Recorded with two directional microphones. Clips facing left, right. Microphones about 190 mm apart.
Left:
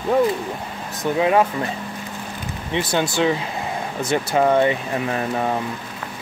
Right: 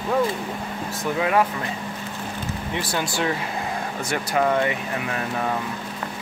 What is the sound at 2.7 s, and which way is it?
Speech, 20° left (ahead or behind).